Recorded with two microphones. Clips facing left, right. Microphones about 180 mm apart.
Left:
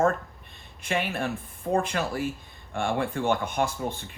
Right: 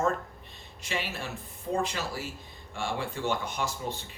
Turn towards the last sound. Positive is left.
turn(degrees=55)  # may be behind; listen again after turning